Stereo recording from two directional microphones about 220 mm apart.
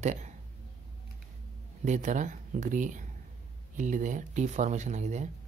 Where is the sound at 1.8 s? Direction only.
35° right (ahead or behind).